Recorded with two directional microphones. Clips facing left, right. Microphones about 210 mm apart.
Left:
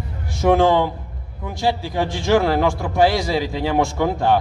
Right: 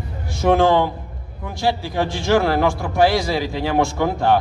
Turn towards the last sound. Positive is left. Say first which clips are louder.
# even
turn(degrees=15)  # may be behind; listen again after turning